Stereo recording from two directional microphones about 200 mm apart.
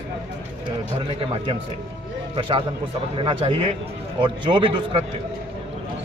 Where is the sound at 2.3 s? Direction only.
25° right (ahead or behind).